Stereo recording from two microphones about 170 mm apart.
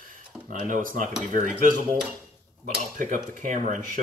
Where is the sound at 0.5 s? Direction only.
50° right (ahead or behind).